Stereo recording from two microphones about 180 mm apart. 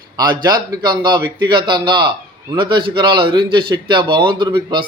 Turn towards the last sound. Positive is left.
turn(degrees=-25)  # may be behind; listen again after turning